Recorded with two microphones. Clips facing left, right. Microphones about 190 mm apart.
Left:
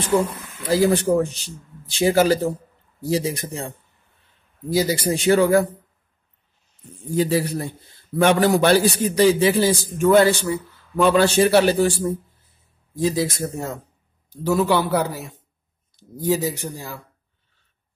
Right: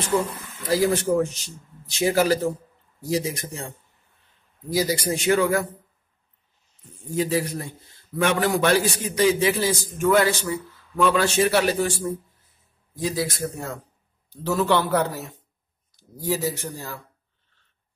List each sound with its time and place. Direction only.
0.9 s a man's voice: 30° left (ahead or behind)
4.6 s a man's voice: 25° left (ahead or behind)
7.2 s a man's voice: 35° left (ahead or behind)
13.0 s a man's voice: 25° left (ahead or behind)
14.3 s a man's voice: 10° left (ahead or behind)